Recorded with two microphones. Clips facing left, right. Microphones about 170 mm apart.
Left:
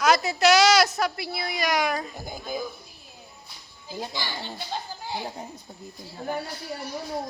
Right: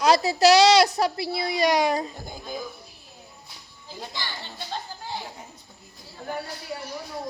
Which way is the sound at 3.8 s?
5° left (ahead or behind).